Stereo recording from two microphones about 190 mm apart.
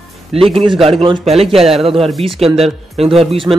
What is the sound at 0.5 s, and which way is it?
A man's voice, 30° right (ahead or behind).